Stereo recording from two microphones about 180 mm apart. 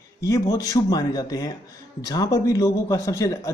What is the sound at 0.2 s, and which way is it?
A man's voice, 20° left (ahead or behind).